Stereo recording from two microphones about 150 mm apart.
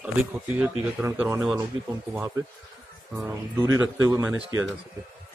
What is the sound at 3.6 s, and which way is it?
Speech, 20° right (ahead or behind).